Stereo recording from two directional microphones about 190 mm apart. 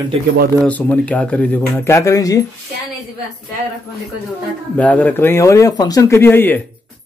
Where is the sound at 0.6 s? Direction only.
10° left (ahead or behind).